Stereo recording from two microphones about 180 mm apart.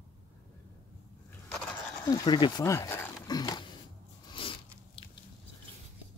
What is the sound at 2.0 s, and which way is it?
Speech, 25° left (ahead or behind).